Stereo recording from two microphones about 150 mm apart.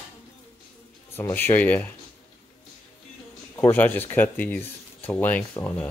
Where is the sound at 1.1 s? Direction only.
15° left (ahead or behind).